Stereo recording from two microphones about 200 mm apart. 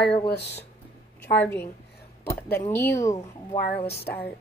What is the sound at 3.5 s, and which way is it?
Speech, 30° left (ahead or behind).